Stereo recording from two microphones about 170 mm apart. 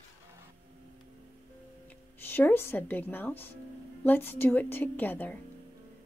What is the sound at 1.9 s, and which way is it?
A woman's voice, 10° left (ahead or behind).